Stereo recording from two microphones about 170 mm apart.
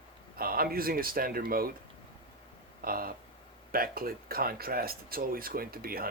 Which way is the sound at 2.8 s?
60° right (ahead or behind).